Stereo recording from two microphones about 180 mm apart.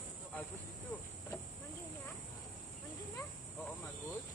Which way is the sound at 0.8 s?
10° left (ahead or behind).